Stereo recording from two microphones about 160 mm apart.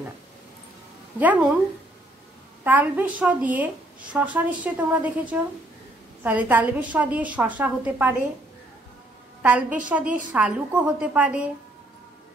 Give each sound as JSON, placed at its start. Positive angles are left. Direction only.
{"t": 1.2, "sound": "a woman's voice", "side_deg": -10}
{"t": 2.6, "sound": "a woman's voice", "side_deg": -10}
{"t": 9.4, "sound": "a woman's voice", "side_deg": -10}